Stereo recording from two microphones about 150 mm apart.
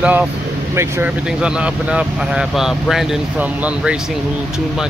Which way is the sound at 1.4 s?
5° right (ahead or behind).